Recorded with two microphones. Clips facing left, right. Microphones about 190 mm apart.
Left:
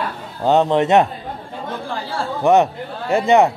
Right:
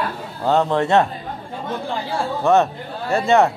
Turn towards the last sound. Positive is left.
turn(degrees=15)  # may be behind; listen again after turning